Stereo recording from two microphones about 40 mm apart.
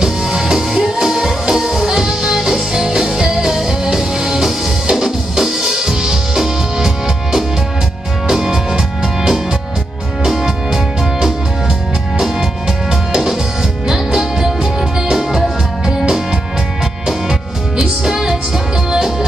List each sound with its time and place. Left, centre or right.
0.0 s music: centre
8.3 s music: centre
13.1 s music: centre
17.3 s music: centre